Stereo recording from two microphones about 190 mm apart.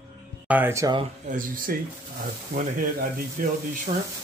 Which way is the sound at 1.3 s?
45° right (ahead or behind).